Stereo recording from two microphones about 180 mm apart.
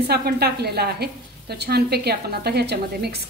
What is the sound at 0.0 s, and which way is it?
A woman's voice, 65° right (ahead or behind).